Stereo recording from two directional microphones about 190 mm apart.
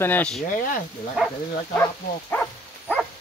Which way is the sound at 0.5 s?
45° left (ahead or behind).